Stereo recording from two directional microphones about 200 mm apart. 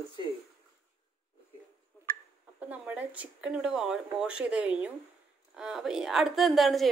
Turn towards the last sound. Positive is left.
turn(degrees=0)  # may be behind; listen again after turning